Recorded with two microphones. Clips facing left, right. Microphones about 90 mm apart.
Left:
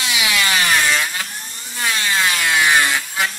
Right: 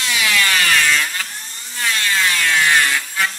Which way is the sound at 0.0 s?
15° left (ahead or behind).